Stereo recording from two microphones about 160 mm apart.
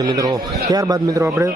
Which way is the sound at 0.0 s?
25° right (ahead or behind).